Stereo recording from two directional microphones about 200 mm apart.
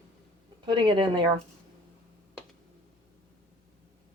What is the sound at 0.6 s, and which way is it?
Speech, 25° right (ahead or behind).